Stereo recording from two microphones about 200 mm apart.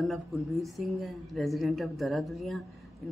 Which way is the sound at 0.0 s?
Centre (ahead or behind).